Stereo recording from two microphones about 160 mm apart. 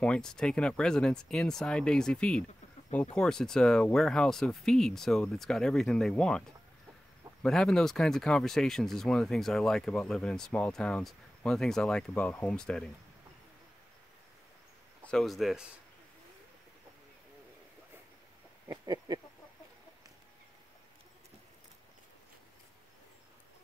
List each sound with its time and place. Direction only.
0.0 s speech: 5° left (ahead or behind)
7.4 s speech: 5° left (ahead or behind)
15.0 s speech: centre (ahead or behind)
18.7 s a sound: 25° right (ahead or behind)